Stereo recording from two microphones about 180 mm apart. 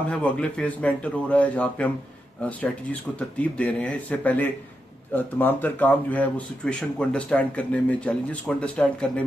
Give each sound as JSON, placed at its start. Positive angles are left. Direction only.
{"t": 0.1, "sound": "speech", "side_deg": 5}